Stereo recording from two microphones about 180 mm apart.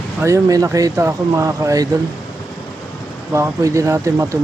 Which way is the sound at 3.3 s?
15° right (ahead or behind).